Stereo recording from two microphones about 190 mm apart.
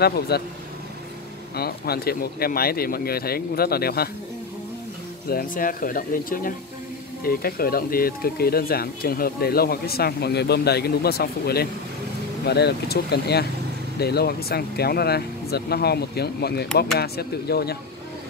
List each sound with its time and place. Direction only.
0.3 s speech: 55° left (ahead or behind)
1.6 s speech: 55° left (ahead or behind)
5.3 s speech: 50° left (ahead or behind)